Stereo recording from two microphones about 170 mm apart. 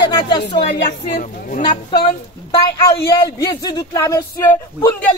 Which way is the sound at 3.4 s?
20° left (ahead or behind).